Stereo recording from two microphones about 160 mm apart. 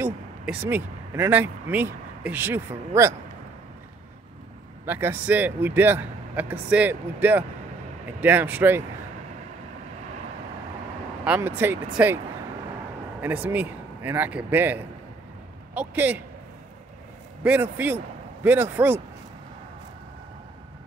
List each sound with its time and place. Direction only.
0.0 s speech: 10° right (ahead or behind)
4.8 s a man's voice: 10° right (ahead or behind)
11.2 s a man's voice: 10° right (ahead or behind)
13.2 s a man's voice: 10° right (ahead or behind)
17.4 s a man's voice: 10° right (ahead or behind)